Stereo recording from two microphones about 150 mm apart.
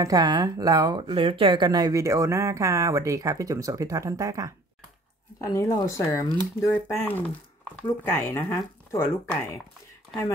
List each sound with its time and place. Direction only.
0.0 s speech: 25° right (ahead or behind)
5.4 s speech: 20° left (ahead or behind)